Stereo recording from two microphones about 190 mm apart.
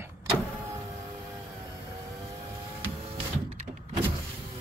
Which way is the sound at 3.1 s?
30° right (ahead or behind).